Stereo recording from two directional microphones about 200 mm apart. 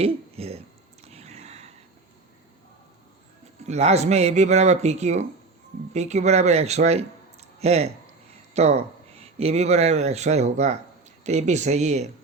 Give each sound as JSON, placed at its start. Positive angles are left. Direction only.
{"t": 0.0, "sound": "speech", "side_deg": -30}
{"t": 1.0, "sound": "a sound", "side_deg": -30}
{"t": 3.7, "sound": "speech", "side_deg": -35}